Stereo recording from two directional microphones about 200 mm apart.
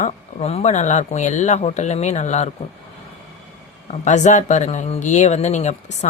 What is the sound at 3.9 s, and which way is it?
Speech, 35° left (ahead or behind).